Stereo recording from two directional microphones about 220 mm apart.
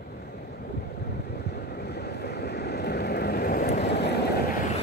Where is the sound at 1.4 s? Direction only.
50° left (ahead or behind).